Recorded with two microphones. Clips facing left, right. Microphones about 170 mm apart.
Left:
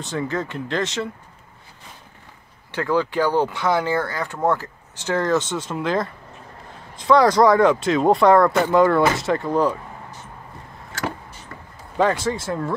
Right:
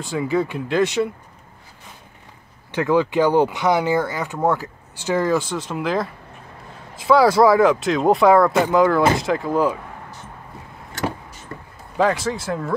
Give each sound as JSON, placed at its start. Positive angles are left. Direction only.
{"t": 0.0, "sound": "speech", "side_deg": -5}
{"t": 2.7, "sound": "speech", "side_deg": -15}
{"t": 5.5, "sound": "speech", "side_deg": 0}
{"t": 12.0, "sound": "speech", "side_deg": 0}